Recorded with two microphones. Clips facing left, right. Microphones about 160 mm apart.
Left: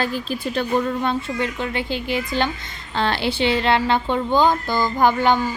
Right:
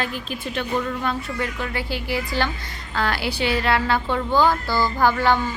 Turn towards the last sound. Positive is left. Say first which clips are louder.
# left 2 dB
turn(degrees=20)  # may be behind; listen again after turning